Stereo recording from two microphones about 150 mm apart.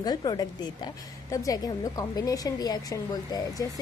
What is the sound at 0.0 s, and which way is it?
A woman's voice, 25° left (ahead or behind).